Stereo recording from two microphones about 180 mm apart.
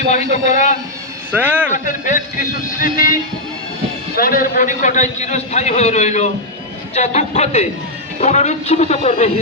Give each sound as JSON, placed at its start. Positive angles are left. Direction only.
{"t": 0.4, "sound": "speech", "side_deg": 40}
{"t": 1.3, "sound": "speech", "side_deg": -10}
{"t": 1.7, "sound": "a man's voice", "side_deg": 45}